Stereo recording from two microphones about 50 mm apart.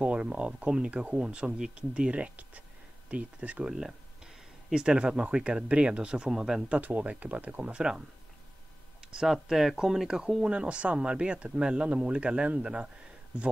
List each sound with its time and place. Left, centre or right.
0.0 s speech: right
3.6 s speech: centre
6.7 s speech: right
7.7 s speech: centre
9.1 s speech: centre
10.0 s speech: centre